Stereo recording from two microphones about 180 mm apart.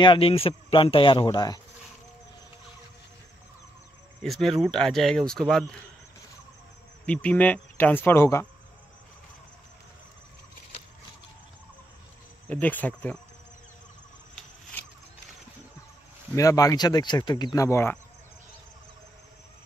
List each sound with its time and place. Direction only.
0.0 s speech: 30° left (ahead or behind)
4.2 s speech: centre (ahead or behind)
7.1 s speech: 5° left (ahead or behind)
12.4 s speech: 10° left (ahead or behind)
16.3 s speech: 20° left (ahead or behind)